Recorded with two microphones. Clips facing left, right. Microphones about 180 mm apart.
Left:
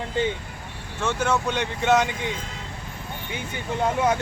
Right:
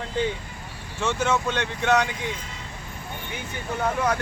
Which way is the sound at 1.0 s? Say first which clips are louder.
Even; 10° left (ahead or behind).